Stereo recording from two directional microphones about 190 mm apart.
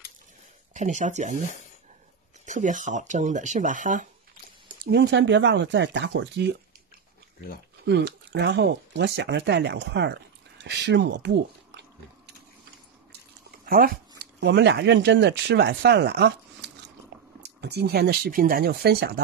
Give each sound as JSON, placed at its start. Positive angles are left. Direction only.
{"t": 0.7, "sound": "speech", "side_deg": -40}
{"t": 2.4, "sound": "speech", "side_deg": -40}
{"t": 4.8, "sound": "speech", "side_deg": -70}
{"t": 7.8, "sound": "speech", "side_deg": -65}
{"t": 13.7, "sound": "speech", "side_deg": -50}